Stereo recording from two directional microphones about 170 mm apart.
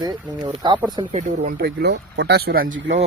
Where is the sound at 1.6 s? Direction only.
65° right (ahead or behind).